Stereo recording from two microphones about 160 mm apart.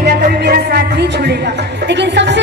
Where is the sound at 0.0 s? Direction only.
65° right (ahead or behind); by 1.3 s 90° right.